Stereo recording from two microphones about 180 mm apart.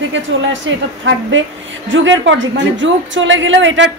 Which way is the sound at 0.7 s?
90° right.